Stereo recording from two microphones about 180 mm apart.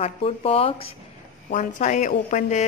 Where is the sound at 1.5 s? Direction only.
45° left (ahead or behind).